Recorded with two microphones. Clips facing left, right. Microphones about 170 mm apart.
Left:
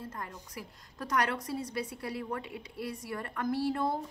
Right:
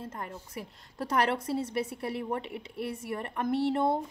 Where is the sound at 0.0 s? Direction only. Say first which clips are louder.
Right 3 dB; 25° right (ahead or behind).